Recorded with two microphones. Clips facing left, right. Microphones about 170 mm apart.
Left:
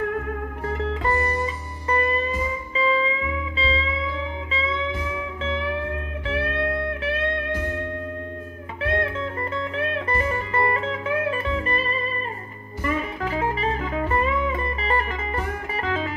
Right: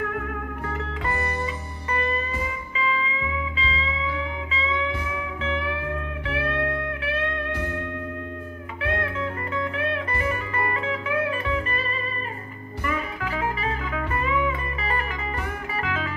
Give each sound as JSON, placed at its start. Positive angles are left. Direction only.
{"t": 1.0, "sound": "music", "side_deg": 35}
{"t": 5.1, "sound": "music", "side_deg": 30}
{"t": 8.8, "sound": "music", "side_deg": 35}
{"t": 12.8, "sound": "music", "side_deg": 35}